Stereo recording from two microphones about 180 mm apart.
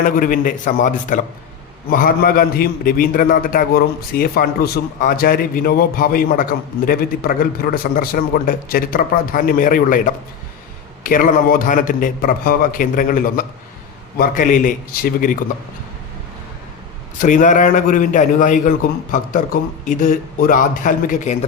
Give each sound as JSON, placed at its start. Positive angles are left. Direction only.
{"t": 0.0, "sound": "a man's voice", "side_deg": 50}
{"t": 11.0, "sound": "a man's voice", "side_deg": 50}
{"t": 17.2, "sound": "a man's voice", "side_deg": 45}